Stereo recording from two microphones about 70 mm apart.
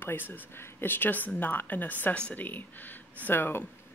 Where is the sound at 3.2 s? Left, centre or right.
Left.